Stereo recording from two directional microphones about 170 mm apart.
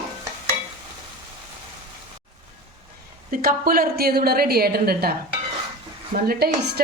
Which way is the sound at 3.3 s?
60° right (ahead or behind).